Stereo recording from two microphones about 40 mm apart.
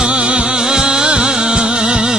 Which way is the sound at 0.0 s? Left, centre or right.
Right.